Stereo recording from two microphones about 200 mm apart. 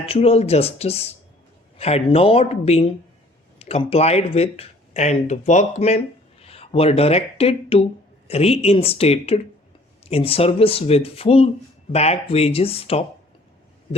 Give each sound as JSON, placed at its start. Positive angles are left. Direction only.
{"t": 0.0, "sound": "speech", "side_deg": 30}